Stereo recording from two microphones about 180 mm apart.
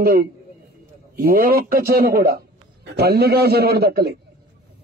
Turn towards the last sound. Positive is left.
turn(degrees=-60)  # may be behind; listen again after turning